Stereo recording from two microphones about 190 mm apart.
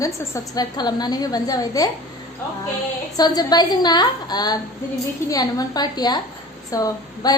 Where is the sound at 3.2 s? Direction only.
20° left (ahead or behind).